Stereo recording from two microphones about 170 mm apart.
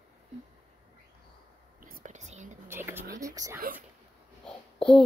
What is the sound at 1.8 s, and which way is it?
Whispering, 50° right (ahead or behind).